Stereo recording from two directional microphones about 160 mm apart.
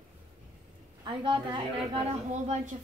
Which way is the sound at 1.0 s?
30° right (ahead or behind).